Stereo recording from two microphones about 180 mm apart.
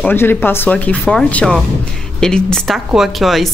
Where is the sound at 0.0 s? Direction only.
10° left (ahead or behind).